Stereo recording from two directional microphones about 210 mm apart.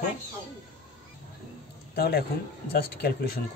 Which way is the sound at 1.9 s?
50° left (ahead or behind).